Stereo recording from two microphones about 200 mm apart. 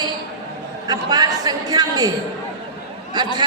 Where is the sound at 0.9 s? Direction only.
20° right (ahead or behind).